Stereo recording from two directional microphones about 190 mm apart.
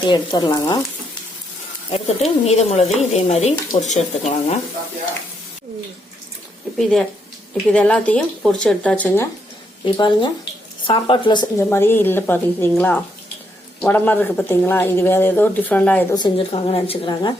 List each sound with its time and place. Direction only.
0.1 s speech: 25° left (ahead or behind)
1.9 s speech: 30° left (ahead or behind)
7.5 s speech: 5° left (ahead or behind)
9.8 s speech: 25° left (ahead or behind)
11.7 s speech: 10° left (ahead or behind)
16.1 s speech: 25° left (ahead or behind)